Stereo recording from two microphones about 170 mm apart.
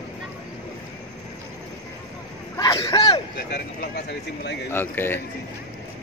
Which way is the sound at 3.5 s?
70° left (ahead or behind).